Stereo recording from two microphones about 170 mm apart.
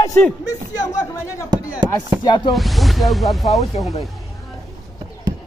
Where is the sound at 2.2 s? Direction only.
25° left (ahead or behind).